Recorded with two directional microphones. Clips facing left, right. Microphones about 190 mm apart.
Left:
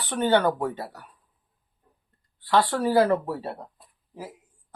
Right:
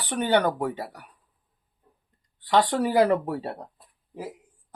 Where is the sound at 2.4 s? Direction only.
20° right (ahead or behind).